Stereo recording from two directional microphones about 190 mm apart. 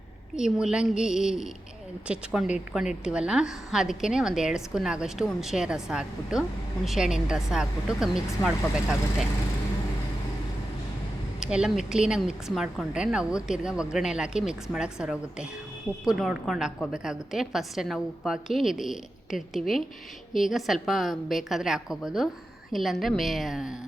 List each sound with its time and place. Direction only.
0.3 s a woman's voice: 5° right (ahead or behind)
8.4 s speech: 20° left (ahead or behind)
11.3 s a woman's voice: 5° right (ahead or behind)